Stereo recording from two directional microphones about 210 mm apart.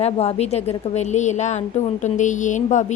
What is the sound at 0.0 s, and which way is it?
A woman's voice, 30° left (ahead or behind).